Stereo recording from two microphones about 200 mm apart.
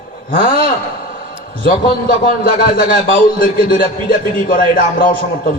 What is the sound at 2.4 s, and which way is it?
A man's voice, 45° left (ahead or behind).